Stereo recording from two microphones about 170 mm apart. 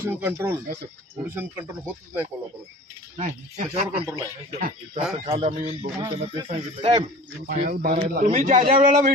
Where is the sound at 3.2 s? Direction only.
55° right (ahead or behind).